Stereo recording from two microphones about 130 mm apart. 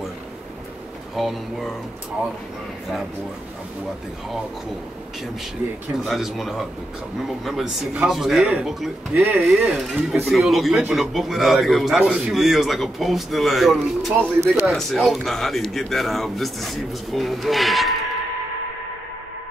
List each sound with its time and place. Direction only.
1.1 s a man's voice: centre (ahead or behind)
6.0 s a man's voice: centre (ahead or behind)
9.1 s speech: 10° right (ahead or behind)
9.8 s a man's voice: centre (ahead or behind)